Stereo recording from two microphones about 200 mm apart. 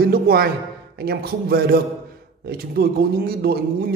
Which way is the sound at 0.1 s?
50° right (ahead or behind).